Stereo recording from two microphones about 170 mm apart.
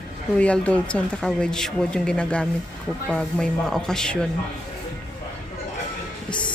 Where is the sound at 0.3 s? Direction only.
5° left (ahead or behind).